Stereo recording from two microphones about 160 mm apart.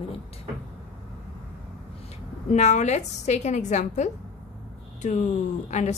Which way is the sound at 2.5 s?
45° left (ahead or behind).